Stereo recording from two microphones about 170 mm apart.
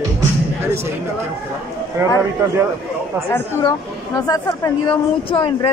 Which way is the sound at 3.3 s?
20° left (ahead or behind).